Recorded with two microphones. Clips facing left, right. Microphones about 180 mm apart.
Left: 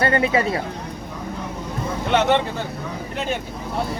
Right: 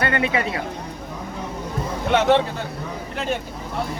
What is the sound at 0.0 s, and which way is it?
Speech, 35° left (ahead or behind).